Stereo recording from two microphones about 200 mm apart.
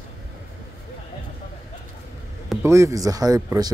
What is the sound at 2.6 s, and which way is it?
Speech, 15° right (ahead or behind).